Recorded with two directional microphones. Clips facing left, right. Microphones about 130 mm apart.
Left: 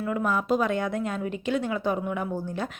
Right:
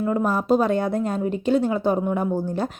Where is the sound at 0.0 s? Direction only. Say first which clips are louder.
Right 4 dB; 35° right (ahead or behind).